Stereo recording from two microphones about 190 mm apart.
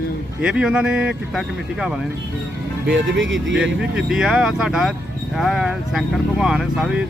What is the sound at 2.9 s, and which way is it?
Speech, 75° right (ahead or behind).